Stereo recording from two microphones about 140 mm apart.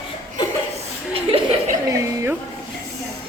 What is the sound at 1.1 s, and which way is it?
Chuckle, 45° right (ahead or behind).